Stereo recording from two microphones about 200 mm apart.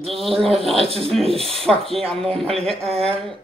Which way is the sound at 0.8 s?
30° right (ahead or behind).